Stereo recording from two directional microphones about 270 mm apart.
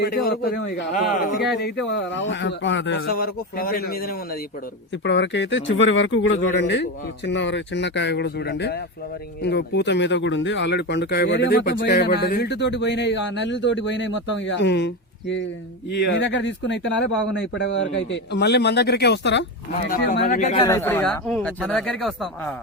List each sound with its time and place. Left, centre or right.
0.0 s speech: left
20.7 s speech: centre